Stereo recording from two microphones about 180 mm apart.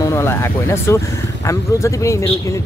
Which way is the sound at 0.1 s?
15° left (ahead or behind).